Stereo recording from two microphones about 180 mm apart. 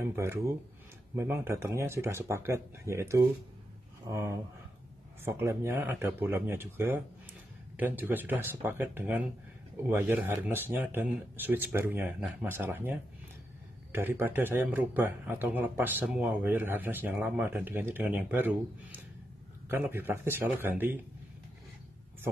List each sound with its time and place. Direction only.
0.1 s speech: 15° right (ahead or behind)